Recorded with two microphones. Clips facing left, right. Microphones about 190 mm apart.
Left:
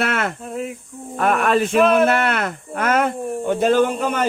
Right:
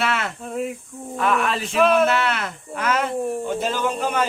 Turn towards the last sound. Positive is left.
turn(degrees=55)  # may be behind; listen again after turning